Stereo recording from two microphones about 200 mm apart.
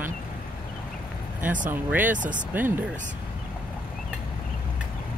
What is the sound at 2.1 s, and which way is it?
Speech, 40° right (ahead or behind).